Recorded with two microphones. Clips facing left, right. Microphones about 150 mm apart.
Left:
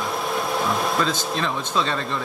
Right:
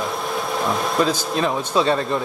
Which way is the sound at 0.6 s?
Centre (ahead or behind).